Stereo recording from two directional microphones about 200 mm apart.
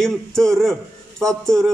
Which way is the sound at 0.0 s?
Centre (ahead or behind).